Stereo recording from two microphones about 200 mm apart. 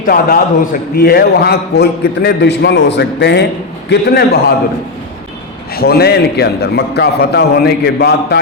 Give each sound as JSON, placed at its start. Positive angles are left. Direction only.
{"t": 0.0, "sound": "a man's voice", "side_deg": 45}
{"t": 5.7, "sound": "a man's voice", "side_deg": 50}